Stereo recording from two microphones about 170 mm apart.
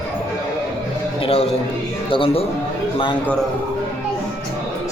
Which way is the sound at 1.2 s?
35° left (ahead or behind).